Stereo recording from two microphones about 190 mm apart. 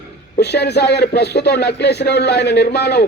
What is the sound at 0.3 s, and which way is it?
Speech, 60° left (ahead or behind).